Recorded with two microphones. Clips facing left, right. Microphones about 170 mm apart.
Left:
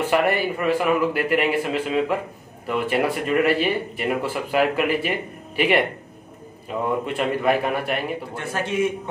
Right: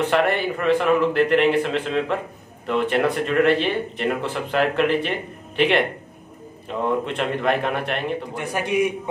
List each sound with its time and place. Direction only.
0.1 s a man's voice: 5° left (ahead or behind)
8.4 s a man's voice: 15° right (ahead or behind)